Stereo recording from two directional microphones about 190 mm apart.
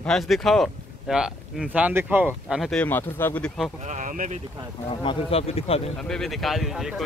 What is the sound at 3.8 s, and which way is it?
Speech, 45° right (ahead or behind).